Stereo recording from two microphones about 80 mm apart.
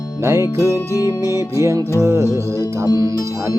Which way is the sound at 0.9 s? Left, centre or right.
Left.